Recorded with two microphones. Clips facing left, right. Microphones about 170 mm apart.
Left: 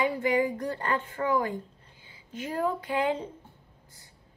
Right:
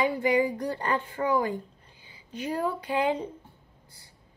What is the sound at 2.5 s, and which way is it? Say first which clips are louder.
Speech: even; 25° right (ahead or behind).